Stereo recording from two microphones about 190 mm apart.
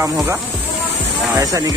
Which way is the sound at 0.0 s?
10° right (ahead or behind).